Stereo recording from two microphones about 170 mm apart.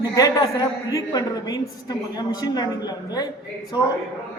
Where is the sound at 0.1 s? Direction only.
20° left (ahead or behind).